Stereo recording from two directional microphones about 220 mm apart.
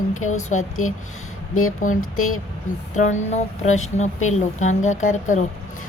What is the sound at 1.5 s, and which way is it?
Speech, 75° left (ahead or behind).